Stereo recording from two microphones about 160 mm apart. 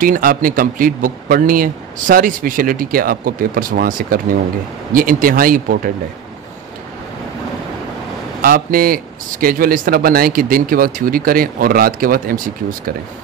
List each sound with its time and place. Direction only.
0.0 s speech: 60° right (ahead or behind)
8.4 s speech: 65° right (ahead or behind)